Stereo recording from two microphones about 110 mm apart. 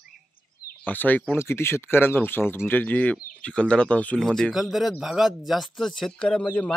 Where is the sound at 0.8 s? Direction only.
15° left (ahead or behind).